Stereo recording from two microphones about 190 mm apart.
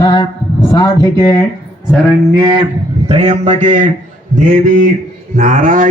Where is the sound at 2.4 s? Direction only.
25° right (ahead or behind).